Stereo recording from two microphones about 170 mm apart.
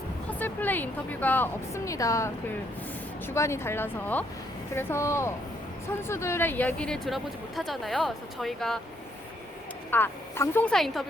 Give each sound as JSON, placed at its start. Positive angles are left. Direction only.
{"t": 0.3, "sound": "speech", "side_deg": 10}
{"t": 9.9, "sound": "speech", "side_deg": 15}